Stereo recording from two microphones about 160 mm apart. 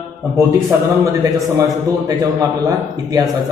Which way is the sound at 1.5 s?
20° right (ahead or behind).